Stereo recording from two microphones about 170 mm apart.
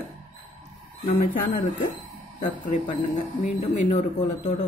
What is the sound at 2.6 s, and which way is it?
Speech, 45° left (ahead or behind).